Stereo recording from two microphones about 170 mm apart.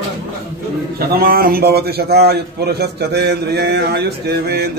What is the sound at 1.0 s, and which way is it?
A man's voice, 60° right (ahead or behind).